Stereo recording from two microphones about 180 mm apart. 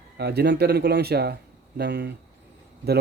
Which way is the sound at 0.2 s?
65° right (ahead or behind).